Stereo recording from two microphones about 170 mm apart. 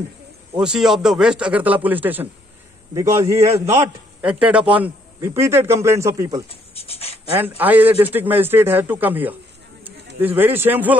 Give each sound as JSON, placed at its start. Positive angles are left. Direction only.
{"t": 0.6, "sound": "a man's voice", "side_deg": -5}
{"t": 6.5, "sound": "a sound", "side_deg": 35}
{"t": 7.3, "sound": "a man's voice", "side_deg": -10}